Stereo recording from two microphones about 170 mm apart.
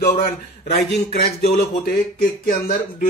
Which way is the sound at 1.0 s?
65° left (ahead or behind).